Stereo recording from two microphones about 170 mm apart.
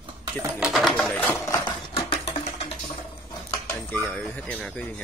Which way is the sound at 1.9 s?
35° left (ahead or behind).